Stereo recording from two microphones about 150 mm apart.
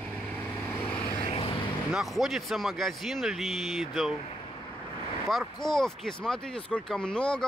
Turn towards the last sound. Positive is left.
turn(degrees=5)  # may be behind; listen again after turning